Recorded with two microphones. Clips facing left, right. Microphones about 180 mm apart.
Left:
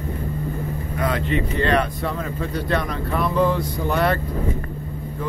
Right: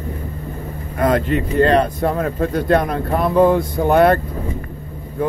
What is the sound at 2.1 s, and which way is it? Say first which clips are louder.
Speech: right 7 dB; 55° right (ahead or behind).